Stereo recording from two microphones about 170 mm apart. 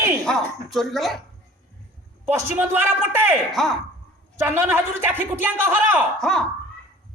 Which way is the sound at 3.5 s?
Centre (ahead or behind).